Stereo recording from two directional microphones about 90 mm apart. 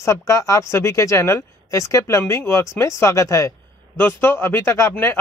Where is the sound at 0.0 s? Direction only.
35° left (ahead or behind).